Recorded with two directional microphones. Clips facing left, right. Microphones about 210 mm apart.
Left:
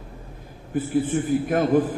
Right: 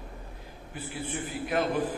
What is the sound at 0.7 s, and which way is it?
A man's voice, 45° left (ahead or behind).